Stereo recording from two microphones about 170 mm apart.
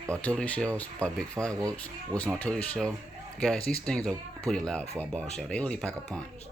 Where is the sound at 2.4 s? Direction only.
10° left (ahead or behind).